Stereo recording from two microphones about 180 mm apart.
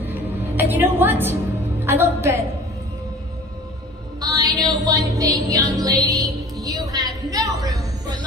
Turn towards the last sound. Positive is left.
turn(degrees=-20)  # may be behind; listen again after turning